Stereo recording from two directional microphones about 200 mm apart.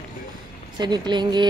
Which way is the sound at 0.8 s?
20° right (ahead or behind).